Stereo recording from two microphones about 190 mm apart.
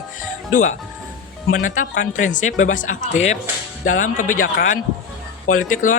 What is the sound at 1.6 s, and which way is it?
Speech, 45° left (ahead or behind).